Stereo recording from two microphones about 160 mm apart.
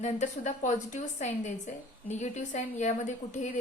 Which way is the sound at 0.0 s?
50° left (ahead or behind).